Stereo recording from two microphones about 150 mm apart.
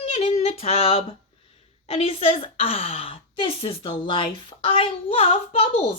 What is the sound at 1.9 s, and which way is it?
A woman's voice, 40° left (ahead or behind).